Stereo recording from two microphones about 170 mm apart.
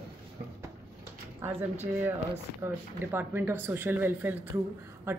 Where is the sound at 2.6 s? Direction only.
15° right (ahead or behind).